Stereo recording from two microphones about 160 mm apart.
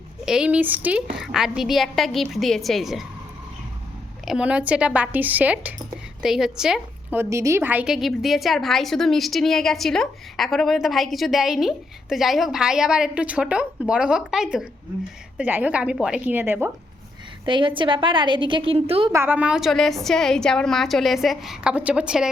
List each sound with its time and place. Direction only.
0.3 s a woman's voice: 5° right (ahead or behind)
4.3 s a woman's voice: 5° right (ahead or behind)
7.2 s a woman's voice: 20° right (ahead or behind)
17.4 s a woman's voice: 30° right (ahead or behind)
19.1 s a woman's voice: 10° right (ahead or behind)